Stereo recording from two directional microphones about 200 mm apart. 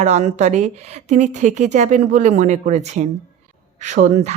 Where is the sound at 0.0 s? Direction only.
35° right (ahead or behind).